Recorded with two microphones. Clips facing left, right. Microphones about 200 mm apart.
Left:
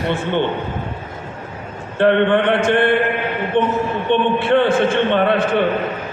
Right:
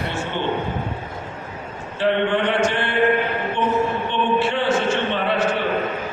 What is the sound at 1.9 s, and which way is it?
A man's voice, 55° left (ahead or behind).